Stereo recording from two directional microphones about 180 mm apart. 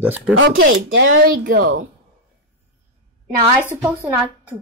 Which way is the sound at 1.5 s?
55° right (ahead or behind).